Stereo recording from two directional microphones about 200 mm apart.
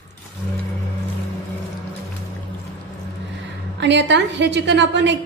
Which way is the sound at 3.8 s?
60° right (ahead or behind).